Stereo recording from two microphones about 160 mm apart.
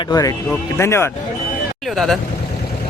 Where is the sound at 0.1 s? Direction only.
20° left (ahead or behind).